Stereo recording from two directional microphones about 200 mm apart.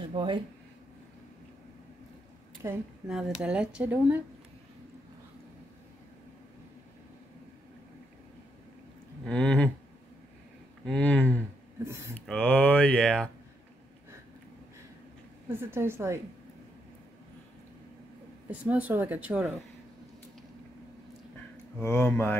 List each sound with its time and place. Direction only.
0.1 s speech: 25° right (ahead or behind)
2.6 s speech: 15° right (ahead or behind)
3.1 s speech: 5° right (ahead or behind)
9.2 s speech: 5° left (ahead or behind)
10.9 s speech: 5° left (ahead or behind)
15.4 s speech: 10° right (ahead or behind)
18.5 s speech: 5° right (ahead or behind)
21.7 s speech: 10° left (ahead or behind)